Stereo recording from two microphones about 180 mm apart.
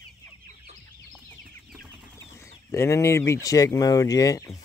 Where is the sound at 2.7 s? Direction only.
15° left (ahead or behind).